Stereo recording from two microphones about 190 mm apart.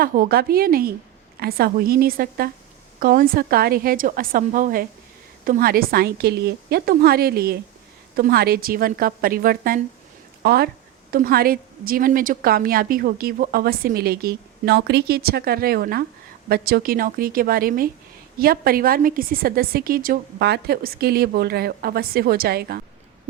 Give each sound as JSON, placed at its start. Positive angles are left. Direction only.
{"t": 0.0, "sound": "a woman's voice", "side_deg": -50}